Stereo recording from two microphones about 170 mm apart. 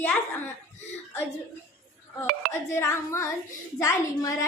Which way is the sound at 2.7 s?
15° left (ahead or behind).